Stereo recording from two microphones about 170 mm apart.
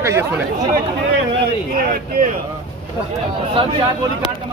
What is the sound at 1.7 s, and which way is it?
Speech, 55° right (ahead or behind).